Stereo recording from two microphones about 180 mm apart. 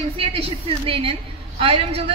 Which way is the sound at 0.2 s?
30° right (ahead or behind).